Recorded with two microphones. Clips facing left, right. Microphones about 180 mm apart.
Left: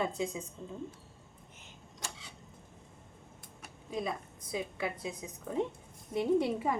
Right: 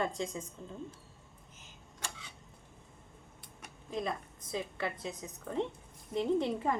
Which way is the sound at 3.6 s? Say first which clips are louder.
Even; 5° left (ahead or behind).